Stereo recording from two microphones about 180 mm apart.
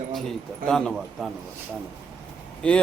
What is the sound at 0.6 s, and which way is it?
Speech, centre (ahead or behind).